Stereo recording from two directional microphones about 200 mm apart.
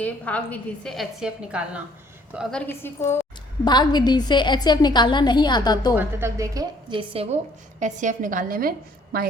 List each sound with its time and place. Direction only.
0.0 s a woman's voice: 5° left (ahead or behind)
5.9 s a woman's voice: 10° right (ahead or behind); by 7.3 s 30° right (ahead or behind)
7.8 s a woman's voice: 40° right (ahead or behind)